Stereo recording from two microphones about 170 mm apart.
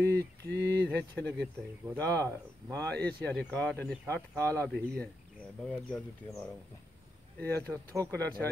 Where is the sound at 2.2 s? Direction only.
20° right (ahead or behind).